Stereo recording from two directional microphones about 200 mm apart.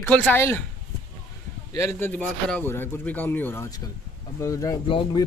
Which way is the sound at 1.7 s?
15° left (ahead or behind).